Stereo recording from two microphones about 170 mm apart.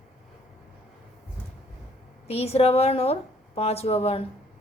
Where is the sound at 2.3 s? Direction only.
35° left (ahead or behind).